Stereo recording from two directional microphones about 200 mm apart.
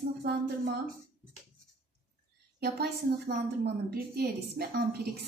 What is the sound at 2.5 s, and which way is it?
A woman's voice, 50° right (ahead or behind).